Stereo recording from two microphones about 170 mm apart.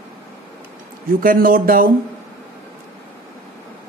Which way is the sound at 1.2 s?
55° right (ahead or behind).